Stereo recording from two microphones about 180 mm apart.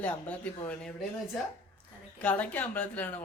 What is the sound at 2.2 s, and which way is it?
Speech, 10° left (ahead or behind).